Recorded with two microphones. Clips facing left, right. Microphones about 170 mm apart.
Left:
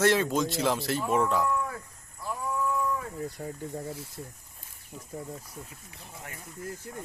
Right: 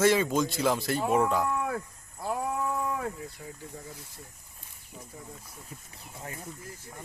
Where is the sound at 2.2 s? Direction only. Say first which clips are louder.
Right 1 dB; 60° right (ahead or behind).